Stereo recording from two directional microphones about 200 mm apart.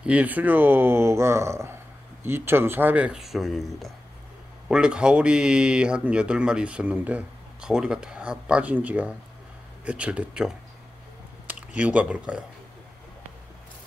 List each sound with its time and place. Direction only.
0.0 s speech: 5° right (ahead or behind)